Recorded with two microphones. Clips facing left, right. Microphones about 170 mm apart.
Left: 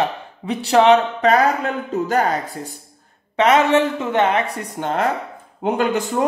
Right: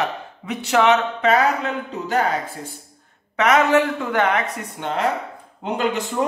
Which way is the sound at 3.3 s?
30° left (ahead or behind).